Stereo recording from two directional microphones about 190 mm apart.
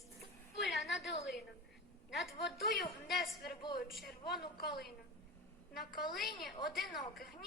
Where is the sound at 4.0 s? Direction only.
55° left (ahead or behind).